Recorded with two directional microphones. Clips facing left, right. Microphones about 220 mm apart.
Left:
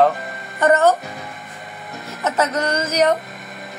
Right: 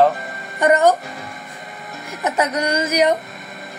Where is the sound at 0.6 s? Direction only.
15° right (ahead or behind).